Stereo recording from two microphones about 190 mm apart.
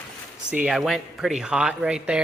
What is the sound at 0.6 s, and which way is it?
Speech, centre (ahead or behind).